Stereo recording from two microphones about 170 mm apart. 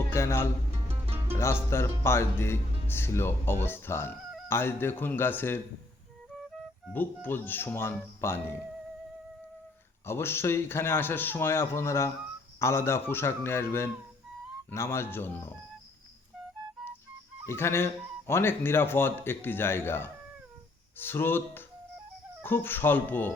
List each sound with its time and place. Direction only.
0.1 s speech: 15° left (ahead or behind)
6.9 s speech: 10° left (ahead or behind)
10.1 s speech: 15° left (ahead or behind)
17.4 s speech: 15° left (ahead or behind)